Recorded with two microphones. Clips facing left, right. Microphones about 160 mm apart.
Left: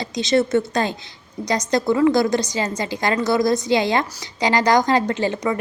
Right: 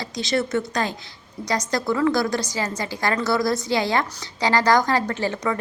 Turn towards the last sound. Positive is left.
turn(degrees=15)  # may be behind; listen again after turning